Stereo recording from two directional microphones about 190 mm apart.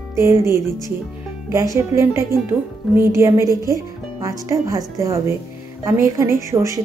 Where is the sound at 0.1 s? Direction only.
15° right (ahead or behind).